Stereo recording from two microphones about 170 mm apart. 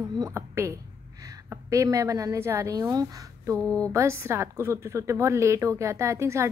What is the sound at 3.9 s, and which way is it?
A woman's voice, 15° right (ahead or behind).